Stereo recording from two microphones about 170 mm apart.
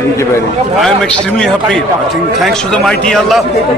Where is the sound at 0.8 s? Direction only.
5° left (ahead or behind).